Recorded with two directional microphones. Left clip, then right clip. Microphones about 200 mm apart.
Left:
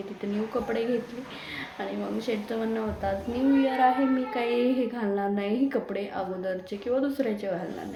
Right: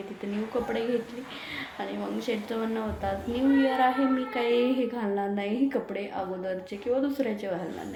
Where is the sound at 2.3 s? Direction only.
Centre (ahead or behind).